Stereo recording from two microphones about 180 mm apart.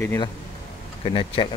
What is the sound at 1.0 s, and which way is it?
Speech, 30° left (ahead or behind).